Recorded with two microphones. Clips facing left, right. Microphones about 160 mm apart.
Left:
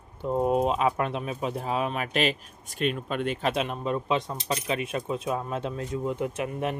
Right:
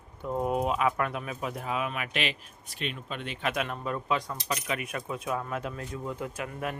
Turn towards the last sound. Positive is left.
turn(degrees=25)  # may be behind; listen again after turning